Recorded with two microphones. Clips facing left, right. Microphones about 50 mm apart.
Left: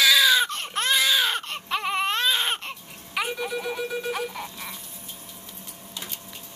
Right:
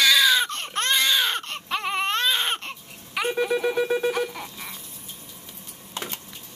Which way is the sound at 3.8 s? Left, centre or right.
Right.